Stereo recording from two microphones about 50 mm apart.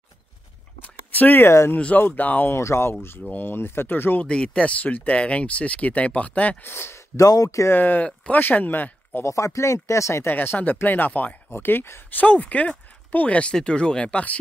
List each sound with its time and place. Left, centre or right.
0.8 s a sound: left
2.1 s speech: left
2.5 s speech: left
4.3 s speech: centre
4.7 s speech: left
6.6 s speech: left
7.2 s speech: left
7.7 s speech: left
9.2 s speech: left
10.2 s speech: left
10.8 s speech: left
11.5 s speech: left
12.1 s speech: left